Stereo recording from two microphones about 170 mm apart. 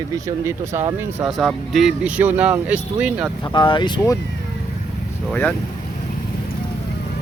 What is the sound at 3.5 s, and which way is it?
Speech, 25° left (ahead or behind).